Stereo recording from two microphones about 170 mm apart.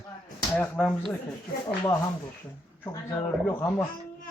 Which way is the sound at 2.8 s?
20° left (ahead or behind).